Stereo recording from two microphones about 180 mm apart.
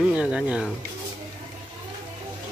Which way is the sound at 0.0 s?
5° right (ahead or behind).